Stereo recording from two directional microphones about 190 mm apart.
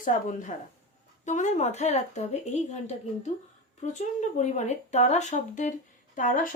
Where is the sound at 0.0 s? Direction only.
45° left (ahead or behind).